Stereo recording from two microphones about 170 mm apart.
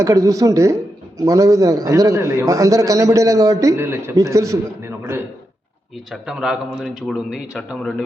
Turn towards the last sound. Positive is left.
turn(degrees=5)  # may be behind; listen again after turning